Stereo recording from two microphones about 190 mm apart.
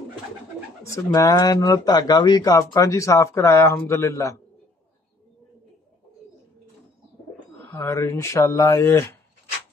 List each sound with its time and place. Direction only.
0.8 s speech: 15° left (ahead or behind)
7.7 s speech: 15° left (ahead or behind)